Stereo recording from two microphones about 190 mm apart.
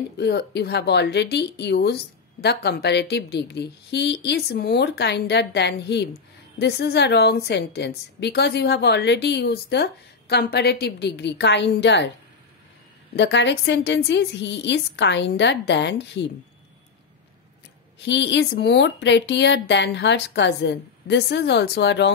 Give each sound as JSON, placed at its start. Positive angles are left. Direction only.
{"t": 0.2, "sound": "a woman's voice", "side_deg": 60}
{"t": 13.1, "sound": "a woman's voice", "side_deg": 65}
{"t": 18.0, "sound": "a woman's voice", "side_deg": 70}